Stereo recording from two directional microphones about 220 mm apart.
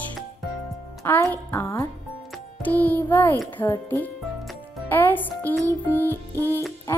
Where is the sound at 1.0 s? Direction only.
10° left (ahead or behind).